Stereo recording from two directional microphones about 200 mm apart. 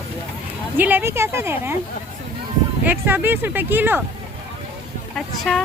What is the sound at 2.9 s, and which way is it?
Speech, 10° right (ahead or behind).